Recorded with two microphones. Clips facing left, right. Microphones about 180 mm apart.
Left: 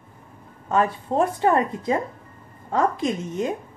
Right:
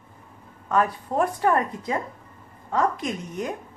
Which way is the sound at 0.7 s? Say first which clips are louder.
Left 2 dB; 25° left (ahead or behind).